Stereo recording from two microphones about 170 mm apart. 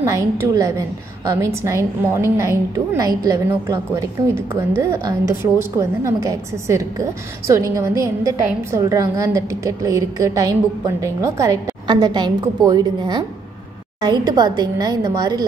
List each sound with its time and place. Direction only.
0.0 s a woman's voice: 15° right (ahead or behind)